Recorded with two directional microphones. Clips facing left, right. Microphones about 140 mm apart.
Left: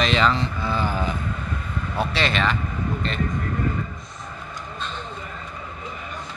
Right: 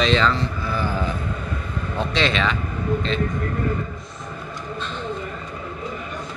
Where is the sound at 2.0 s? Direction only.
5° left (ahead or behind).